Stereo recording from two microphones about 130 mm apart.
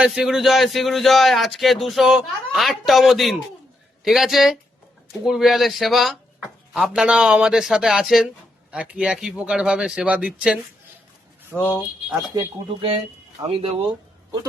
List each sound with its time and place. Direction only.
0.0 s a man's voice: 5° right (ahead or behind)
12.1 s speech: 25° right (ahead or behind)
13.5 s speech: 45° right (ahead or behind)